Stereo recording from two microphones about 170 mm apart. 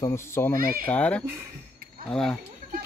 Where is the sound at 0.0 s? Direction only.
15° left (ahead or behind).